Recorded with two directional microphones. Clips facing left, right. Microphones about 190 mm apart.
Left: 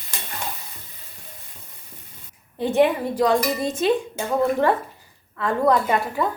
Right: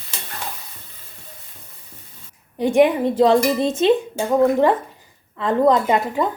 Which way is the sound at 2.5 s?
15° right (ahead or behind).